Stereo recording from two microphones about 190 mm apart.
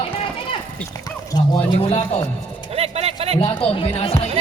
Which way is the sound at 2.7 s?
30° right (ahead or behind).